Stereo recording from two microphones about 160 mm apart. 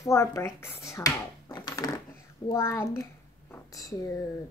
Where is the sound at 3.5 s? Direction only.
20° left (ahead or behind).